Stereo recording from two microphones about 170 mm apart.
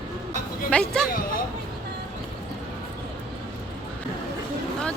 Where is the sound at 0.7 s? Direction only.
5° left (ahead or behind).